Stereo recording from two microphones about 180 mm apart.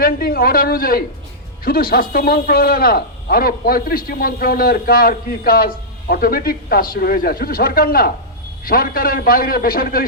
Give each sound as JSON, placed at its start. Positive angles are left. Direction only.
{"t": 0.0, "sound": "a man's voice", "side_deg": 55}